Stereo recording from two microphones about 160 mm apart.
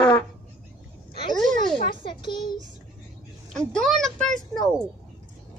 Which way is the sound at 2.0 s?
30° left (ahead or behind).